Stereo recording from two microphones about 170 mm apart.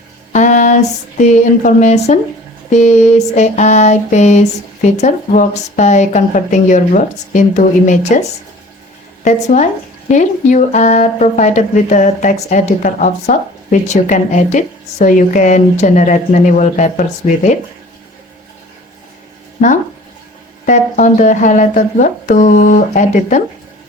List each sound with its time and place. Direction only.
0.3 s a sound: 45° left (ahead or behind)
1.3 s speech: 45° left (ahead or behind)
20.7 s speech: 50° left (ahead or behind)